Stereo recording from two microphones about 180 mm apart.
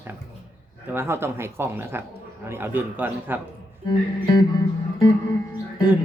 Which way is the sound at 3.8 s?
25° left (ahead or behind).